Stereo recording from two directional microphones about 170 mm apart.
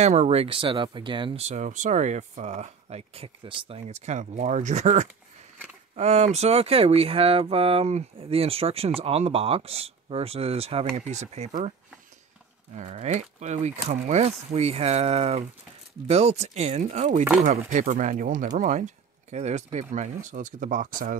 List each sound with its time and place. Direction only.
0.0 s speech: 40° right (ahead or behind)
12.7 s speech: 40° right (ahead or behind)